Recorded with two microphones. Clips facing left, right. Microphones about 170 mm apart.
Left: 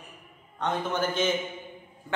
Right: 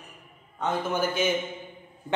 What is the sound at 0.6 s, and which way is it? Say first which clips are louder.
Speech: right 1 dB; 5° right (ahead or behind).